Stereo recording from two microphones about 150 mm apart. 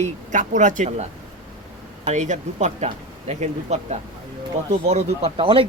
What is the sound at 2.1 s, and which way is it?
Speech, 50° right (ahead or behind).